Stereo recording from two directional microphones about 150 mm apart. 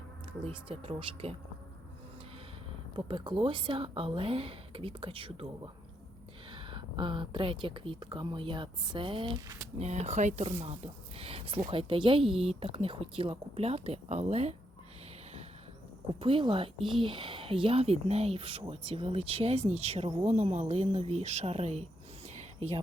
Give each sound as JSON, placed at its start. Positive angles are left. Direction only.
{"t": 0.4, "sound": "speech", "side_deg": -40}
{"t": 2.9, "sound": "speech", "side_deg": -30}
{"t": 9.7, "sound": "speech", "side_deg": -45}
{"t": 16.2, "sound": "speech", "side_deg": -35}